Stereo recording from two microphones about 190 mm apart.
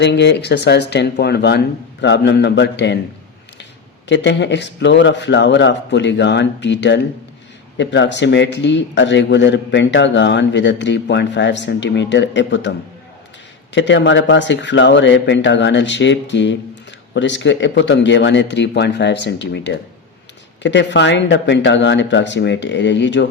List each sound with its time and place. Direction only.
0.0 s speech: 65° left (ahead or behind)
4.1 s a man's voice: 70° left (ahead or behind)
13.7 s a man's voice: 70° left (ahead or behind)